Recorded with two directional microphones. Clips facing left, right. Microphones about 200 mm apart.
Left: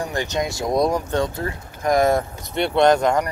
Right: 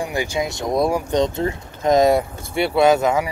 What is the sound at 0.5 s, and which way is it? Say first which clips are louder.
Speech: left 1 dB; centre (ahead or behind).